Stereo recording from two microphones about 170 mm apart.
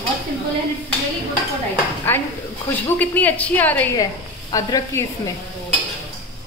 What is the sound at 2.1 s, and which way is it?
Speech, 10° left (ahead or behind).